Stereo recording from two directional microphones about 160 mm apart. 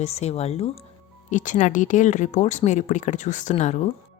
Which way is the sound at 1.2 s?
50° left (ahead or behind).